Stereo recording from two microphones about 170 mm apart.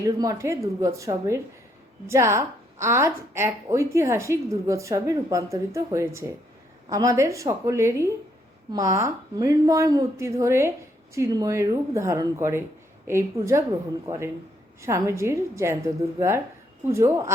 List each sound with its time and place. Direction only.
0.0 s a woman's voice: 20° right (ahead or behind)